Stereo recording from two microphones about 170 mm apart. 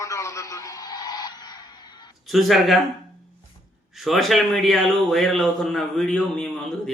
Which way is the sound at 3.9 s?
Centre (ahead or behind).